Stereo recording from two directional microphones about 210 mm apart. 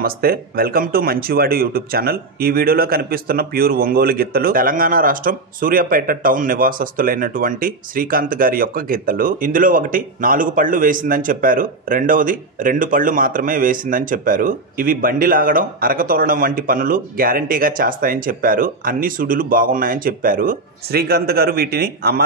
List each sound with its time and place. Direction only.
0.0 s speech: 45° right (ahead or behind)